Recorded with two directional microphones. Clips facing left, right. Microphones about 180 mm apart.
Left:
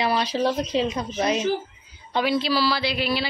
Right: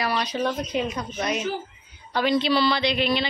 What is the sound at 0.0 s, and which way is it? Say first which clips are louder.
Speech: left 3 dB; 30° left (ahead or behind).